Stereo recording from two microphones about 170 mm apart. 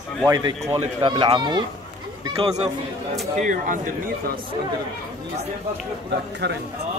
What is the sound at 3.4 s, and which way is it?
Speech, 50° right (ahead or behind).